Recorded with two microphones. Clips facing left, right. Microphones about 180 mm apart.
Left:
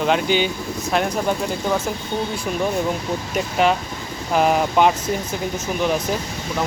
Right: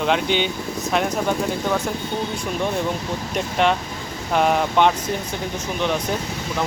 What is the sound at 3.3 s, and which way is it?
A man's voice, 5° left (ahead or behind).